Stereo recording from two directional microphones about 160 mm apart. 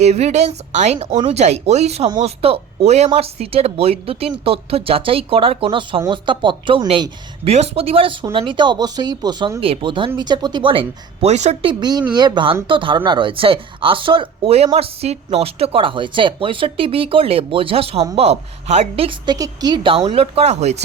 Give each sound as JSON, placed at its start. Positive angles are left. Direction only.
{"t": 0.0, "sound": "a woman's voice", "side_deg": -45}
{"t": 11.7, "sound": "speech", "side_deg": -25}
{"t": 20.1, "sound": "a woman's voice", "side_deg": -40}